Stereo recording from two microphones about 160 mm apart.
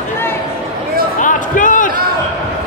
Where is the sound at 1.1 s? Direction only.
55° left (ahead or behind).